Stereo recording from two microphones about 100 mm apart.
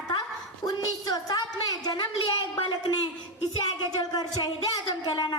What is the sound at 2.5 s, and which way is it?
Speech, 60° left (ahead or behind).